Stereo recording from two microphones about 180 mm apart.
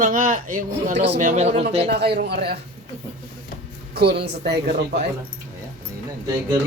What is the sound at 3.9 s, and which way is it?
Speech, 65° right (ahead or behind).